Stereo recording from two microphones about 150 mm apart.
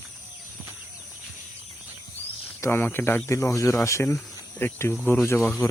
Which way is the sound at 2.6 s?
15° left (ahead or behind).